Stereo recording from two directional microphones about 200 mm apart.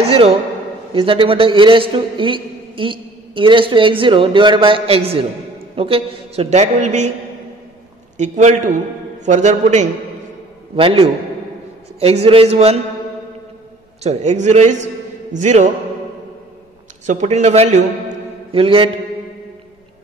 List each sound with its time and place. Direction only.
0.0 s a man's voice: 30° right (ahead or behind)
8.2 s a man's voice: 35° right (ahead or behind)
14.0 s a man's voice: 35° right (ahead or behind)
17.0 s a man's voice: 35° right (ahead or behind)